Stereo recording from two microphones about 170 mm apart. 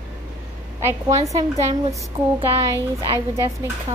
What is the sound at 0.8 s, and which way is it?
A woman's voice, 15° right (ahead or behind).